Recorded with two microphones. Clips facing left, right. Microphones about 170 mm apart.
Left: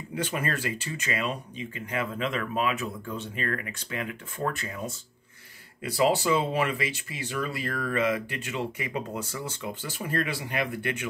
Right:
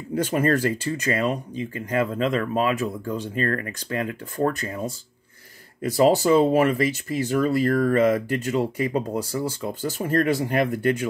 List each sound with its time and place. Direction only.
0.1 s speech: 40° right (ahead or behind)